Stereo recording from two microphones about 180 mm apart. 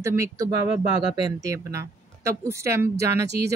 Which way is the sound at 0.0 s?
15° right (ahead or behind).